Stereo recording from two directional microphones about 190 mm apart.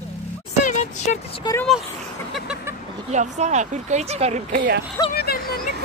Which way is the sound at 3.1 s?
40° right (ahead or behind).